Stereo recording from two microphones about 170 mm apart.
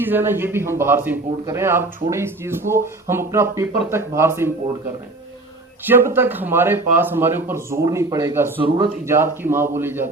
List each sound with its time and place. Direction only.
0.0 s speech: 10° right (ahead or behind)
5.8 s speech: 10° right (ahead or behind)